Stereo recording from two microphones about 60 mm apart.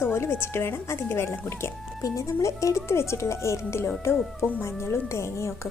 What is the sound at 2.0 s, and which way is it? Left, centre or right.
A woman's voice, left.